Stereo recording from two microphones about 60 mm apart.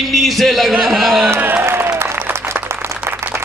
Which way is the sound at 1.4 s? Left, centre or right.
Right.